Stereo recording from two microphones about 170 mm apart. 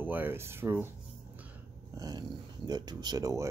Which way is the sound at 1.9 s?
20° right (ahead or behind).